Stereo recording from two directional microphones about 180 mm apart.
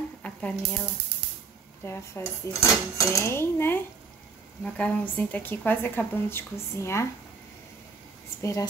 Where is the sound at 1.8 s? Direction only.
15° left (ahead or behind).